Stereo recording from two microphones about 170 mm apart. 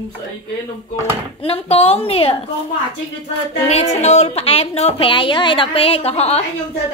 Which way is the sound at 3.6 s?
40° left (ahead or behind).